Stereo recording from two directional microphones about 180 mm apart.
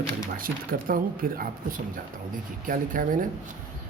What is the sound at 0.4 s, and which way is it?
Speech, 50° right (ahead or behind).